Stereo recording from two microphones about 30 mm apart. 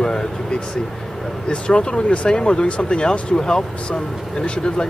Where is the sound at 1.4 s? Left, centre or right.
Left.